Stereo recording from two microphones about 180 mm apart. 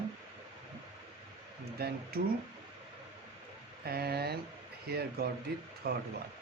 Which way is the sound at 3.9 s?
60° right (ahead or behind).